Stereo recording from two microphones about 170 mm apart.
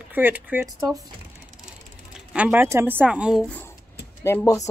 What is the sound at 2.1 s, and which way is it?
Speech, 10° right (ahead or behind).